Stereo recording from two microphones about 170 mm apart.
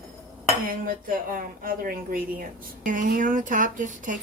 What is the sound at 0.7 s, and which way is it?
A woman's voice, 55° right (ahead or behind).